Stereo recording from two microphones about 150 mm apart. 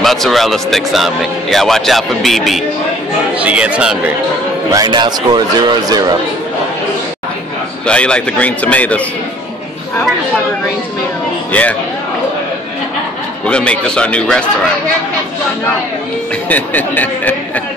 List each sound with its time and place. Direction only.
0.0 s speech: centre (ahead or behind)
4.6 s speech: 25° right (ahead or behind)
7.8 s a man's voice: 5° left (ahead or behind)
13.5 s a man's voice: 5° left (ahead or behind)
16.4 s a man's voice: 10° left (ahead or behind)